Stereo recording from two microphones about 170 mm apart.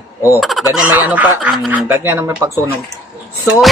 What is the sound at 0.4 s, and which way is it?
Speech, centre (ahead or behind).